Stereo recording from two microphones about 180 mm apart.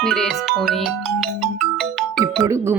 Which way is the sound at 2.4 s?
15° right (ahead or behind).